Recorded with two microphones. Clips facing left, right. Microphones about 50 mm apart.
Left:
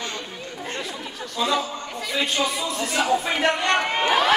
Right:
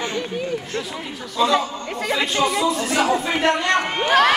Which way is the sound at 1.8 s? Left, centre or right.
Right.